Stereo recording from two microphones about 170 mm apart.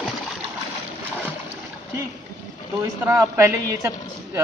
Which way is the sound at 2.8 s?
15° right (ahead or behind).